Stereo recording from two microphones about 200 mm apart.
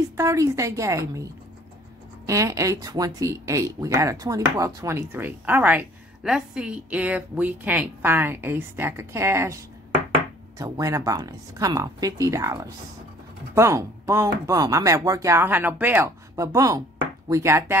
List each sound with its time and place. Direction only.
0.2 s speech: 15° right (ahead or behind)